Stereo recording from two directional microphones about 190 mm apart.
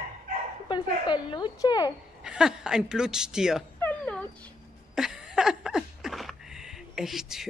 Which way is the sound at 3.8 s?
5° left (ahead or behind).